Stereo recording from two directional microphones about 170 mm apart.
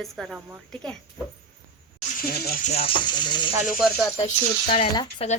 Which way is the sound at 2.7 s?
35° left (ahead or behind).